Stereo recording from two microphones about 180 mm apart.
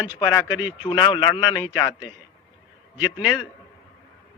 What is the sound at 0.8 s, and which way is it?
Speech, 25° left (ahead or behind).